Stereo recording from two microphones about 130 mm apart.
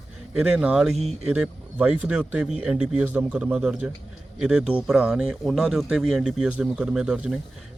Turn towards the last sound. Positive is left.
turn(degrees=-5)  # may be behind; listen again after turning